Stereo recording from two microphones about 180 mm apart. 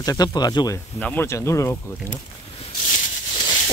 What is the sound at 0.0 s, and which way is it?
Speech, 20° left (ahead or behind).